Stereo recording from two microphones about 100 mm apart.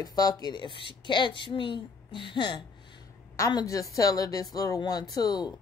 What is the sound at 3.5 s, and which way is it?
Speech, 35° left (ahead or behind).